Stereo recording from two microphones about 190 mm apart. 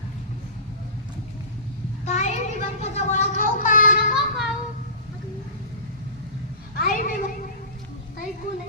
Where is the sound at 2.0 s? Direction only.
40° left (ahead or behind).